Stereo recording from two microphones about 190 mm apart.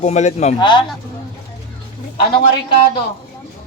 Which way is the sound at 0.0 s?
35° left (ahead or behind).